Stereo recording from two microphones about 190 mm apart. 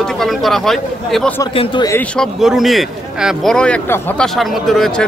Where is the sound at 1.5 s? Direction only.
25° left (ahead or behind).